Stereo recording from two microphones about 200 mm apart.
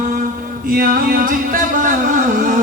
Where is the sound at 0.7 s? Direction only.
45° right (ahead or behind).